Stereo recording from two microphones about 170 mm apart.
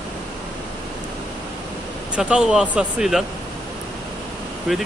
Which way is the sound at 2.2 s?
5° right (ahead or behind).